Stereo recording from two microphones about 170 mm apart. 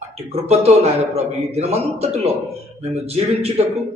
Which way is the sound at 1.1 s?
40° right (ahead or behind).